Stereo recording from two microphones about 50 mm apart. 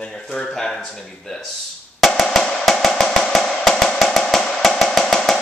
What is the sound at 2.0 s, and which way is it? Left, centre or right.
Drum, centre.